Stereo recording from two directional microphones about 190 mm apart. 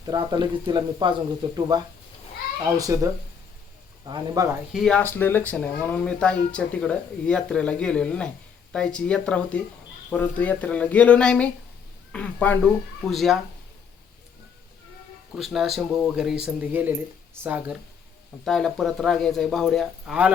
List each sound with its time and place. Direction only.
0.0 s speech: 20° right (ahead or behind)
4.7 s speech: centre (ahead or behind)
15.4 s speech: centre (ahead or behind)
18.4 s speech: centre (ahead or behind)